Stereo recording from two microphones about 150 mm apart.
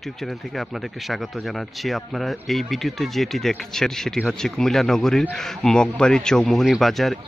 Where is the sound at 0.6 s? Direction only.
Centre (ahead or behind).